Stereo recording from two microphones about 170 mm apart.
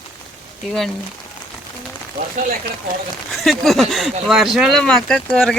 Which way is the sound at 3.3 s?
Centre (ahead or behind).